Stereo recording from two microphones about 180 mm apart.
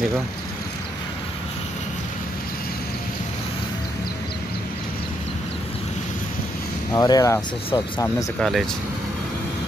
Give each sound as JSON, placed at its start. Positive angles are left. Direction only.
{"t": 6.9, "sound": "speech", "side_deg": 20}
{"t": 8.4, "sound": "speech", "side_deg": 0}